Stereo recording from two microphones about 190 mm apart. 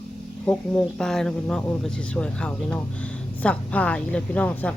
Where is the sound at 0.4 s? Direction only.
5° left (ahead or behind).